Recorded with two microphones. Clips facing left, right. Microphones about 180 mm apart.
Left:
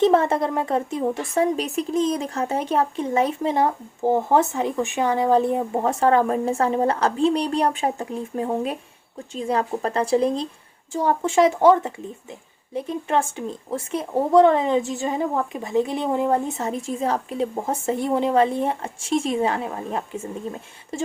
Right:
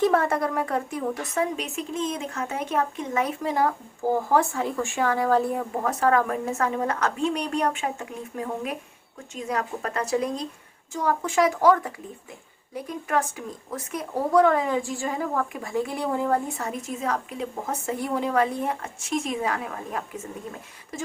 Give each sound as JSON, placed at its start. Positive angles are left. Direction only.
{"t": 0.0, "sound": "speech", "side_deg": 25}